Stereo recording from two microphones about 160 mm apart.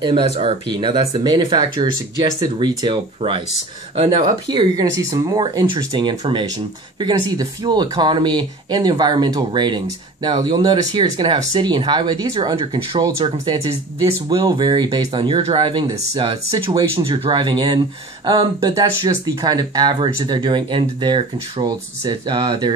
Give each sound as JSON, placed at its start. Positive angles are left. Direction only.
{"t": 0.0, "sound": "speech", "side_deg": -30}
{"t": 16.7, "sound": "speech", "side_deg": -25}